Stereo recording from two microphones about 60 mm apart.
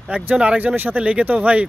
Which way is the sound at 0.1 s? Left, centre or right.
Right.